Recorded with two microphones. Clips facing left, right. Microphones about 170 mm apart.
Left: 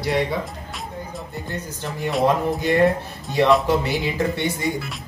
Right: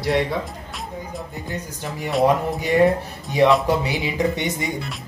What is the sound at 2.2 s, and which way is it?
Speech, 10° right (ahead or behind).